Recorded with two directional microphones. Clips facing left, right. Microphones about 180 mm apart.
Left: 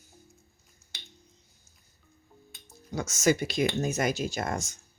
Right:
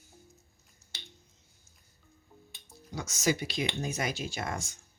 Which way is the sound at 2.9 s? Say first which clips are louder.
Left 5 dB; 50° left (ahead or behind).